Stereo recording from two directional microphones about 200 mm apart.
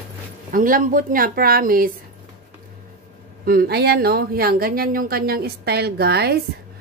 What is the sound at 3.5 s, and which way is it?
A woman's voice, 50° right (ahead or behind).